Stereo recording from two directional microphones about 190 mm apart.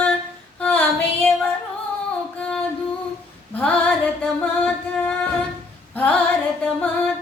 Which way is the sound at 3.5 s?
10° left (ahead or behind).